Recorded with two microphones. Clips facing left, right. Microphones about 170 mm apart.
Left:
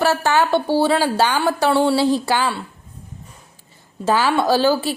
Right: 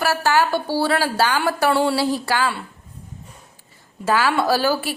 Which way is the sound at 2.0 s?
20° left (ahead or behind).